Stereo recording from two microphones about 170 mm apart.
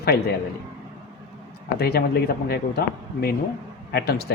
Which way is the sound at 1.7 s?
65° left (ahead or behind).